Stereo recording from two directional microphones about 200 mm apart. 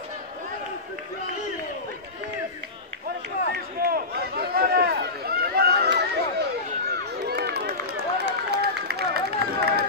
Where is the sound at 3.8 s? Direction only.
50° right (ahead or behind).